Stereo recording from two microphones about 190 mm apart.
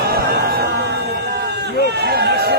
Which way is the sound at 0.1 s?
55° right (ahead or behind).